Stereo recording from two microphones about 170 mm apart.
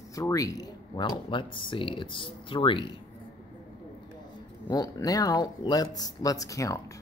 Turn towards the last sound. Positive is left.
turn(degrees=20)  # may be behind; listen again after turning